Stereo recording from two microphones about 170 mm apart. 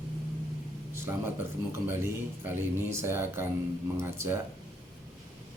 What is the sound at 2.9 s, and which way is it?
Speech, 15° right (ahead or behind).